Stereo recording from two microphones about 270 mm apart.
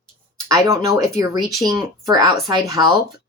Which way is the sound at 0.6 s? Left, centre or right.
Centre.